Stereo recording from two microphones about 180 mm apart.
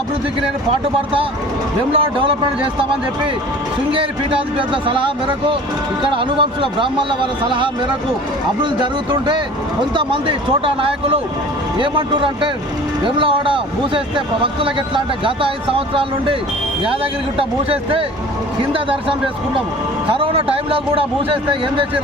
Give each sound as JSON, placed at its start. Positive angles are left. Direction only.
{"t": 1.9, "sound": "speech", "side_deg": -30}
{"t": 3.9, "sound": "speech", "side_deg": -30}